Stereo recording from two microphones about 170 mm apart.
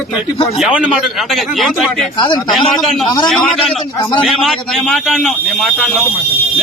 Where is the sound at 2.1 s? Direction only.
30° left (ahead or behind).